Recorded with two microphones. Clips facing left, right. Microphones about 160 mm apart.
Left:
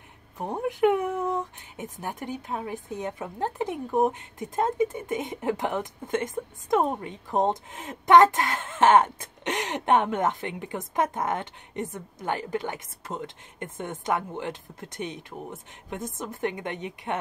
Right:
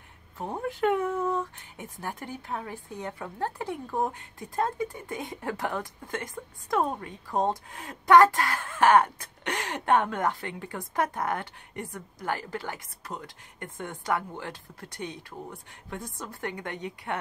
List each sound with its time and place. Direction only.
0.4 s speech: 15° left (ahead or behind)